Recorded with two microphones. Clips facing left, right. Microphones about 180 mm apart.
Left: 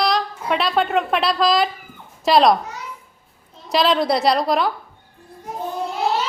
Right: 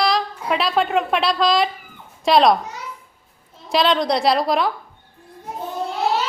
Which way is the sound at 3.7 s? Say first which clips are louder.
Even; centre (ahead or behind).